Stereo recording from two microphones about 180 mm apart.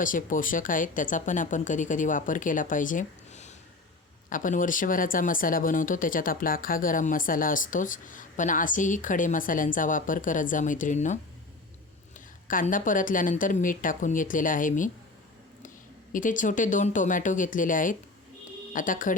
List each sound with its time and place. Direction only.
0.0 s speech: 45° left (ahead or behind)
12.5 s speech: 50° left (ahead or behind)
16.1 s speech: 45° left (ahead or behind)